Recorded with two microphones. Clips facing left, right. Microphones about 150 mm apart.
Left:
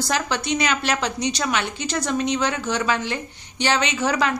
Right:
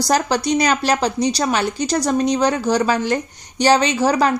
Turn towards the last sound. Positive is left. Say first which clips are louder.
# right 5 dB
turn(degrees=-35)  # may be behind; listen again after turning